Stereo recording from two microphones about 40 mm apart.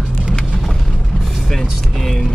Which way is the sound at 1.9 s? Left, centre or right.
Centre.